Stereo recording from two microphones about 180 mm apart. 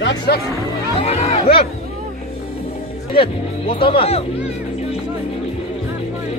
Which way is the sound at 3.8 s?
30° left (ahead or behind).